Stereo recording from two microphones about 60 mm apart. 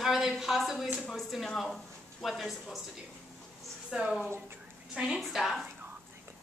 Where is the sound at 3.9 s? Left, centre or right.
Centre.